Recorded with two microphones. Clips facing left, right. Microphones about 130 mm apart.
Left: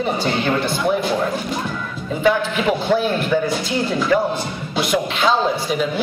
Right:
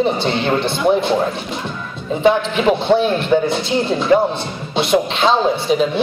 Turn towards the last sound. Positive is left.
turn(degrees=-25)  # may be behind; listen again after turning